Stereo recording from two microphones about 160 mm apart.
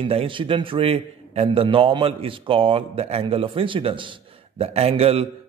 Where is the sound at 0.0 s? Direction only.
35° right (ahead or behind).